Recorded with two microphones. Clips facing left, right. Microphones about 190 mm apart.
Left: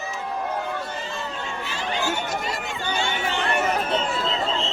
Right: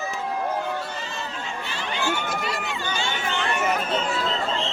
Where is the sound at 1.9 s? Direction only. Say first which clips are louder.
Even; 40° left (ahead or behind).